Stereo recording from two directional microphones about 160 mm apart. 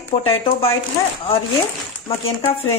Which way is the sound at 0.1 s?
35° left (ahead or behind).